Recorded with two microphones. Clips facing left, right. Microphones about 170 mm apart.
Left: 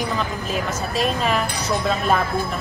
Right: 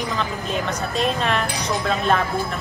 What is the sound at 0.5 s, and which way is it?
Speech, 5° left (ahead or behind).